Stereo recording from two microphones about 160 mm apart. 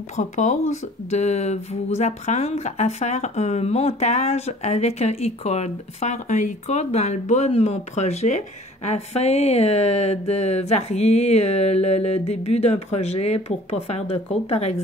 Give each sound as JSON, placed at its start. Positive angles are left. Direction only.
{"t": 0.1, "sound": "speech", "side_deg": 50}